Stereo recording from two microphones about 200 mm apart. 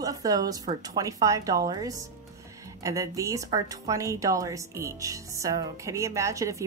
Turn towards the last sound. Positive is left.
turn(degrees=-15)  # may be behind; listen again after turning